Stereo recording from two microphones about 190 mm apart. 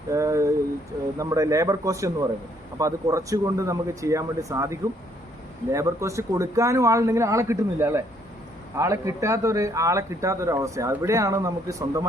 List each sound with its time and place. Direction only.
0.1 s speech: 15° right (ahead or behind)